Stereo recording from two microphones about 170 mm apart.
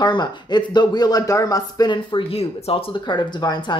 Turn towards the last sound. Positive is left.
turn(degrees=25)  # may be behind; listen again after turning